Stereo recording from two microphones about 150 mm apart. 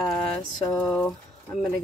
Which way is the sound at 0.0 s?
5° left (ahead or behind).